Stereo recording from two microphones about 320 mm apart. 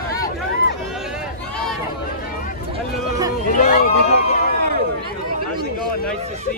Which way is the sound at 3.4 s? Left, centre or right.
Left.